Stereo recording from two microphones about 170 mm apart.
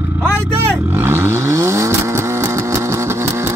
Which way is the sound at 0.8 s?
15° right (ahead or behind).